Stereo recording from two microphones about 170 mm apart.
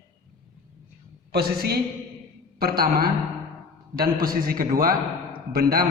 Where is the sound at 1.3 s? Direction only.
65° right (ahead or behind).